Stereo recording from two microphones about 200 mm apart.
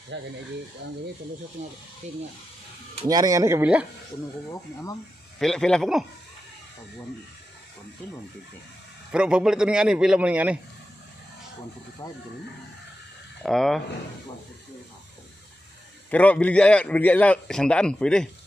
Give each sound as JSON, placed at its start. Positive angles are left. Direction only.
{"t": 0.1, "sound": "speech", "side_deg": -65}
{"t": 2.0, "sound": "speech", "side_deg": -35}
{"t": 3.1, "sound": "speech", "side_deg": -15}
{"t": 5.4, "sound": "a man's voice", "side_deg": 5}
{"t": 9.1, "sound": "a man's voice", "side_deg": -5}
{"t": 12.0, "sound": "a man's voice", "side_deg": 15}
{"t": 13.4, "sound": "a man's voice", "side_deg": 0}
{"t": 16.1, "sound": "a man's voice", "side_deg": 5}